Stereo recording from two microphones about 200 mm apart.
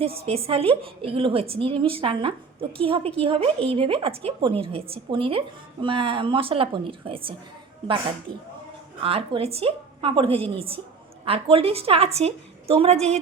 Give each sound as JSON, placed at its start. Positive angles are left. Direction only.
{"t": 0.2, "sound": "a woman's voice", "side_deg": -30}
{"t": 9.0, "sound": "a woman's voice", "side_deg": -30}